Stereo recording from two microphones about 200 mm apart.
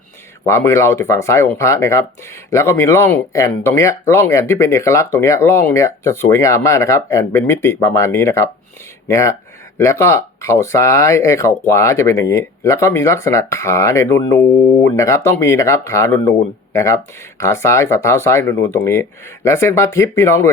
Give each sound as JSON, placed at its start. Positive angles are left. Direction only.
{"t": 0.4, "sound": "speech", "side_deg": 15}